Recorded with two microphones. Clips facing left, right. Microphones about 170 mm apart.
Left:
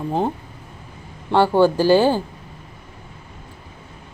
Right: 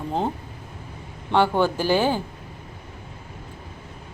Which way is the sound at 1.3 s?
10° left (ahead or behind).